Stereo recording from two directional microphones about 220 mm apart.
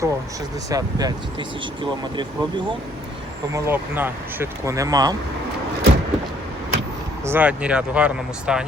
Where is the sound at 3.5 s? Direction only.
10° right (ahead or behind).